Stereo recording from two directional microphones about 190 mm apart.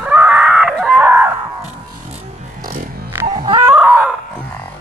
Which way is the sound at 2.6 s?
45° right (ahead or behind).